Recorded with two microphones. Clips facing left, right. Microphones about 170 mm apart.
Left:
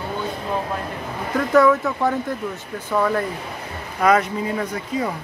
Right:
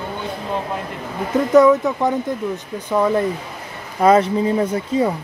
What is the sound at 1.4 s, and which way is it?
Speech, 20° right (ahead or behind).